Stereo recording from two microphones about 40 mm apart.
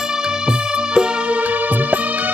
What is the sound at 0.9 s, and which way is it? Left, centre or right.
Music, right.